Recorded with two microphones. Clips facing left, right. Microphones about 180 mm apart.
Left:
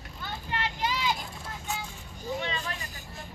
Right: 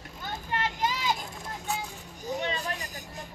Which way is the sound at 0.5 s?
45° right (ahead or behind).